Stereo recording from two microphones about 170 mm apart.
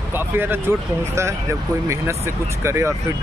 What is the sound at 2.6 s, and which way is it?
Speech, 15° right (ahead or behind).